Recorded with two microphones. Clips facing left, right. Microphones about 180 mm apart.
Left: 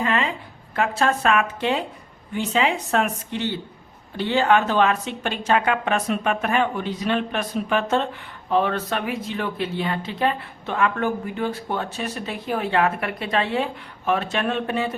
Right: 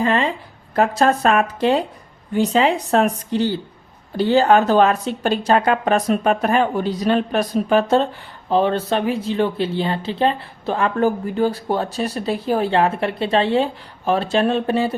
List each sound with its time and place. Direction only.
0.0 s a woman's voice: 35° right (ahead or behind)